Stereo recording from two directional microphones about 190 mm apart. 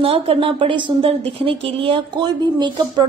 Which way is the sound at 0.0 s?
30° right (ahead or behind).